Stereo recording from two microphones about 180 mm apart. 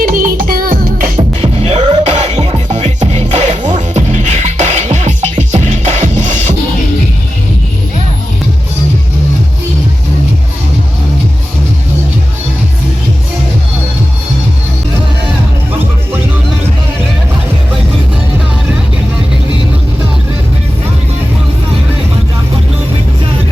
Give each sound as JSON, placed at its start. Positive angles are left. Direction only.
{"t": 0.1, "sound": "music", "side_deg": -50}